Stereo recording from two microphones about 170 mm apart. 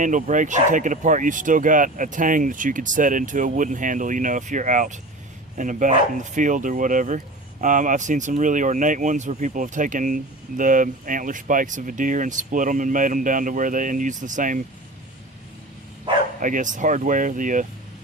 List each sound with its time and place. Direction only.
0.0 s speech: 50° right (ahead or behind)
16.1 s bow-wow: 30° right (ahead or behind)
16.4 s speech: 50° right (ahead or behind)